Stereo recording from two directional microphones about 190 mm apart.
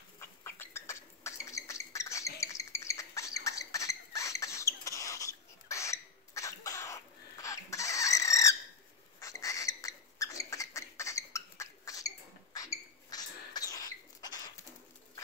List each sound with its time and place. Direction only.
0.2 s bird: 15° left (ahead or behind)
2.4 s squawk: 15° left (ahead or behind)
3.4 s rodents: 15° left (ahead or behind)
9.2 s a sound: 15° left (ahead or behind)